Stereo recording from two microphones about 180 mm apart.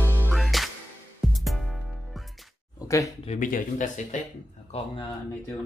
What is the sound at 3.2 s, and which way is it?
Speech, 40° left (ahead or behind).